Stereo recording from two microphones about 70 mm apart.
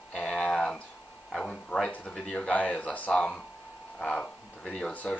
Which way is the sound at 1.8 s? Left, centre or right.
Left.